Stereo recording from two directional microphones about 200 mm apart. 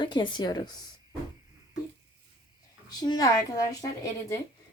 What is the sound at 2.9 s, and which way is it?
Speech, 20° left (ahead or behind).